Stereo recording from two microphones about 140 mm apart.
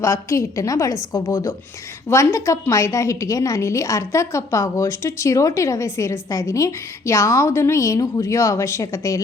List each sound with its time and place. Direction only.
0.0 s a woman's voice: 20° left (ahead or behind)